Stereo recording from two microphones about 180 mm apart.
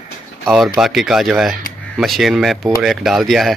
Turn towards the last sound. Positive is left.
turn(degrees=0)  # may be behind; listen again after turning